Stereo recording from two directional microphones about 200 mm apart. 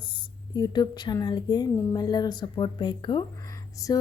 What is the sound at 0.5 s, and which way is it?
Speech, 20° left (ahead or behind).